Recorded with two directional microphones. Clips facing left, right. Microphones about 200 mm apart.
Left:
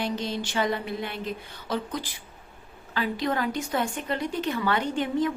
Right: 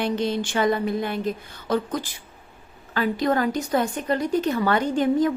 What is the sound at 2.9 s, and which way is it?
A woman's voice, 45° right (ahead or behind).